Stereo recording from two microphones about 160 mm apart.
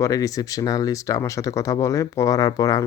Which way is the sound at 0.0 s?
20° left (ahead or behind).